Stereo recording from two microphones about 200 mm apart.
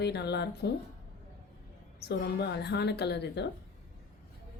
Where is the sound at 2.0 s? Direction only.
55° left (ahead or behind).